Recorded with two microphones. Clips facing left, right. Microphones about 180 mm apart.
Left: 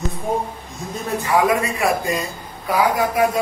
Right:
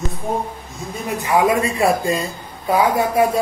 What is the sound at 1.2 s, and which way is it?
Speech, 25° right (ahead or behind).